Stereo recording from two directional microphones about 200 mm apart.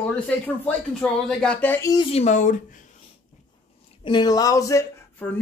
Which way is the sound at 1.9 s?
25° left (ahead or behind).